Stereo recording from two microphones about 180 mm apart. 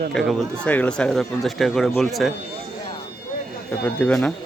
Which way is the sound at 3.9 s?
5° left (ahead or behind).